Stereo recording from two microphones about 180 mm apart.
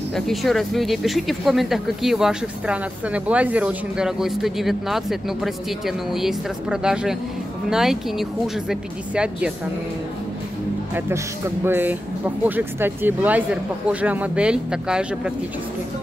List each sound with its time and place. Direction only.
0.1 s speech: centre (ahead or behind)
11.6 s speech: 10° right (ahead or behind)